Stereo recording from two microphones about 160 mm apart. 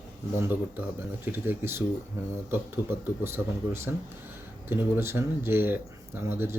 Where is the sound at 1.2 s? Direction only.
15° right (ahead or behind).